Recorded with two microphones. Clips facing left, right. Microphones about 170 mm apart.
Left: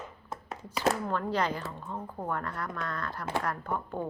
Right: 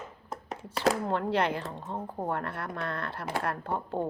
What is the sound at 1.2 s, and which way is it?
A woman's voice, 25° right (ahead or behind).